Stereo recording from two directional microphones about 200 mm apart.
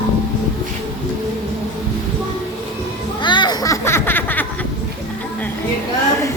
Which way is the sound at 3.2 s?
25° left (ahead or behind).